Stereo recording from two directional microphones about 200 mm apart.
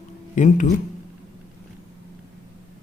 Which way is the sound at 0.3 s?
40° left (ahead or behind).